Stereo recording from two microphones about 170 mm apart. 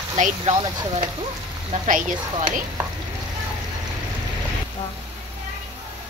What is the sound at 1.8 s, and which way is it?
Speech, 50° right (ahead or behind).